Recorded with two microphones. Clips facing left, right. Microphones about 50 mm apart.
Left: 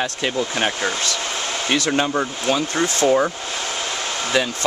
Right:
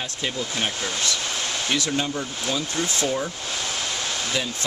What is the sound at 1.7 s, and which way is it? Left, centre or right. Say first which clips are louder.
Speech: left 6 dB; left.